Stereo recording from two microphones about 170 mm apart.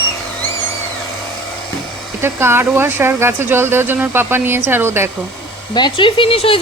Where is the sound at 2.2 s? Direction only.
15° right (ahead or behind).